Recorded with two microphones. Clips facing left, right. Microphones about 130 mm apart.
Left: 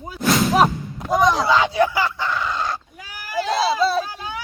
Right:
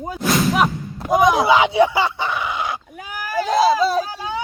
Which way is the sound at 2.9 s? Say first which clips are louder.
Right 3 dB; 50° right (ahead or behind).